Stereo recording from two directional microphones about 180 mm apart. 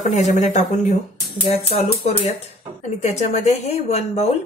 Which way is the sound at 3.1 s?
40° left (ahead or behind).